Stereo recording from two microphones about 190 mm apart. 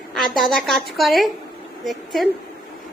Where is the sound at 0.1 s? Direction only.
Centre (ahead or behind).